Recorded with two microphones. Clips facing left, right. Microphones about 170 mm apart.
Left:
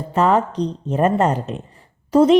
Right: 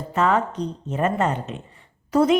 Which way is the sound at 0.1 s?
35° left (ahead or behind).